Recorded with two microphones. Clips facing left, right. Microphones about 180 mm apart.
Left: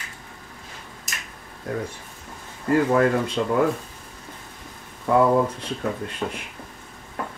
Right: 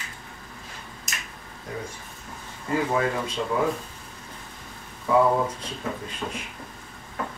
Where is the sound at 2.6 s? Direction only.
60° left (ahead or behind).